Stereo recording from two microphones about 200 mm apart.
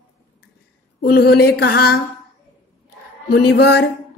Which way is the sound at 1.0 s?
50° left (ahead or behind).